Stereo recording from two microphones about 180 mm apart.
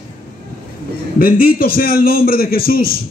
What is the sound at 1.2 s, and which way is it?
A man's voice, 50° left (ahead or behind).